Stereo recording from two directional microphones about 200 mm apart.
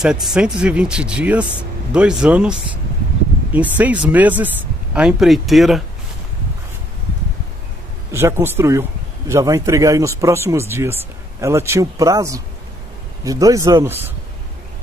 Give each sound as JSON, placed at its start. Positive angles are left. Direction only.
{"t": 0.0, "sound": "speech", "side_deg": -5}
{"t": 3.5, "sound": "speech", "side_deg": -10}
{"t": 8.1, "sound": "speech", "side_deg": -10}